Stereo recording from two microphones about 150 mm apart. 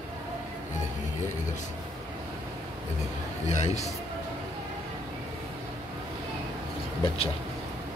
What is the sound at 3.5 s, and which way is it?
Speech, 50° left (ahead or behind).